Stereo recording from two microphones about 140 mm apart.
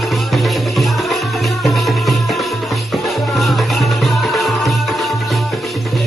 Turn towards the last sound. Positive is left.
turn(degrees=0)  # may be behind; listen again after turning